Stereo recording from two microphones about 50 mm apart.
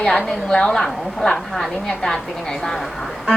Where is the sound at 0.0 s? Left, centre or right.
Centre.